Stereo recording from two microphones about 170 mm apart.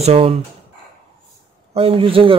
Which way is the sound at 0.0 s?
35° right (ahead or behind).